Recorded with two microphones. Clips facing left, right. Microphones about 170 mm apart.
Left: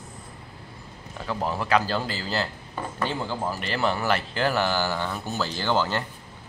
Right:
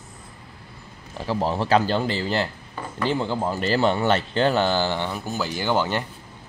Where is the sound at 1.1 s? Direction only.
30° right (ahead or behind).